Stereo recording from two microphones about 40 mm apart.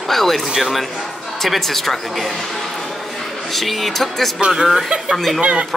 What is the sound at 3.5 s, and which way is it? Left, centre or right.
Speech, centre.